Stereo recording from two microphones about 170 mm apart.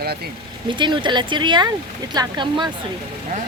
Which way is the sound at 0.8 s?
25° right (ahead or behind).